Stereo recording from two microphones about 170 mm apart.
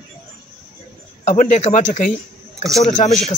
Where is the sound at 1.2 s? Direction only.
45° left (ahead or behind).